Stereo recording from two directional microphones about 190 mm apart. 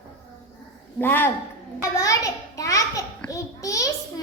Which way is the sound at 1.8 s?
20° left (ahead or behind).